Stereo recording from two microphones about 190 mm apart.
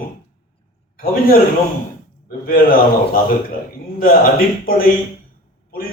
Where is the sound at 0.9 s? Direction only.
50° left (ahead or behind).